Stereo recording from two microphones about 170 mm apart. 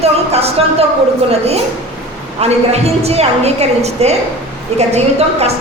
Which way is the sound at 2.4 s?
40° right (ahead or behind).